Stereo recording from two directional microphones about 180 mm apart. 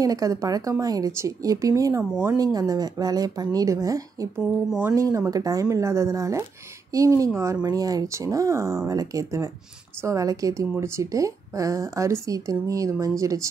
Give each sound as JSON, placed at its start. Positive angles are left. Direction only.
{"t": 0.0, "sound": "speech", "side_deg": -20}